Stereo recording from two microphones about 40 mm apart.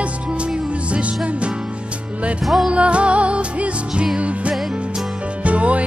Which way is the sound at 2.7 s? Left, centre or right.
Right.